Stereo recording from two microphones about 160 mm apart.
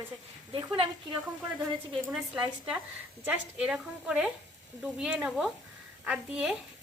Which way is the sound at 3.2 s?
10° right (ahead or behind).